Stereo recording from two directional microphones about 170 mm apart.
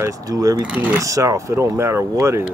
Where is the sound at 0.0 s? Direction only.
20° right (ahead or behind).